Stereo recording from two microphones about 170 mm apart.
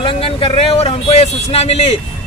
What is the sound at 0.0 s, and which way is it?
Speech, 35° left (ahead or behind).